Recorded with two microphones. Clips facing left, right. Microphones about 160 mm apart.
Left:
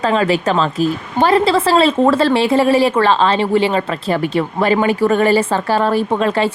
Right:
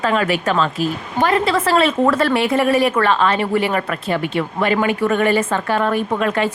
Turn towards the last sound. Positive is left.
turn(degrees=30)  # may be behind; listen again after turning